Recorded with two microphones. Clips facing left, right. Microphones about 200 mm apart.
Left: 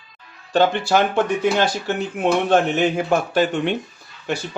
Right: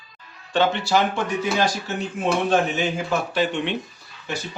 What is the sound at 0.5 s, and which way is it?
Speech, 45° left (ahead or behind).